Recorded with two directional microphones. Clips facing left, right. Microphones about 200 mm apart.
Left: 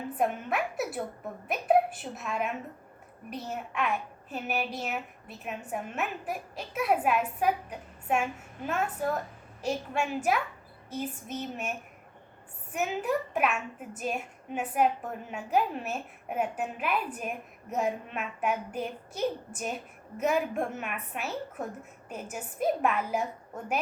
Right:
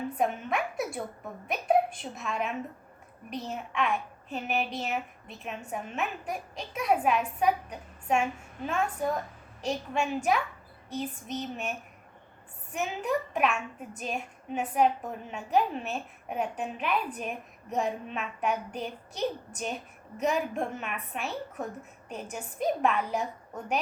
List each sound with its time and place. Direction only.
0.2 s a woman's voice: 5° left (ahead or behind)
12.7 s a woman's voice: 5° left (ahead or behind)